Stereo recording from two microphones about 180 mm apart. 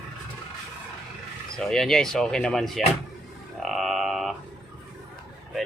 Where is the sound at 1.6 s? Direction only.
5° left (ahead or behind).